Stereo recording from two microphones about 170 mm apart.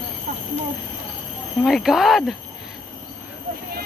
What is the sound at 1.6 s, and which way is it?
Speech, centre (ahead or behind).